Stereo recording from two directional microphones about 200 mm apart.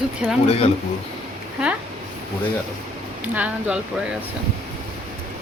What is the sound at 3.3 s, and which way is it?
Speech, 5° right (ahead or behind).